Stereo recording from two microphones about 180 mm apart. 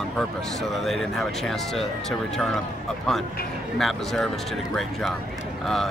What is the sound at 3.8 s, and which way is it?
Speech, centre (ahead or behind).